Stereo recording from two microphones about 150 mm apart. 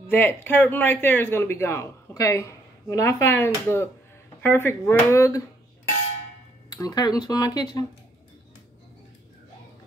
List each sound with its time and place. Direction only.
0.1 s speech: 15° left (ahead or behind)
6.7 s speech: 25° left (ahead or behind)